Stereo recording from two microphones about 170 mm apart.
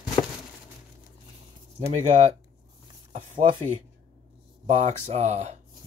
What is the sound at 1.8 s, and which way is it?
Speech, 45° right (ahead or behind).